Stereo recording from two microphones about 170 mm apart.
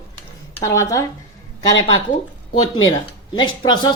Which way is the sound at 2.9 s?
25° left (ahead or behind).